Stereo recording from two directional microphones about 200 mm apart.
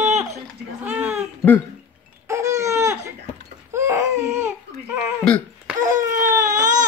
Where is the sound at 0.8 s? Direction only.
10° right (ahead or behind).